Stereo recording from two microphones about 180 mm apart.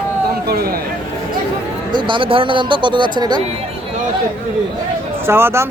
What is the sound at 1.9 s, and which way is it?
Speech, 25° right (ahead or behind).